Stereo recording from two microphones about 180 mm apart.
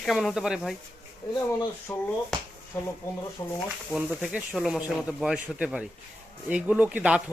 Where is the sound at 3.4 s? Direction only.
15° left (ahead or behind).